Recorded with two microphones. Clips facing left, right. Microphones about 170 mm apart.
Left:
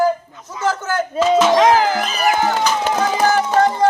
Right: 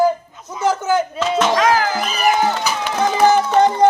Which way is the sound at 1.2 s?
Centre (ahead or behind).